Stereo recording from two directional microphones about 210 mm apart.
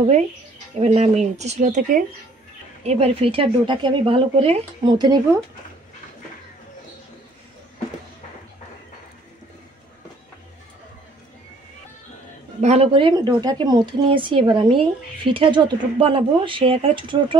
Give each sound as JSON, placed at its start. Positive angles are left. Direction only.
{"t": 0.7, "sound": "a woman's voice", "side_deg": -30}
{"t": 12.5, "sound": "a woman's voice", "side_deg": -30}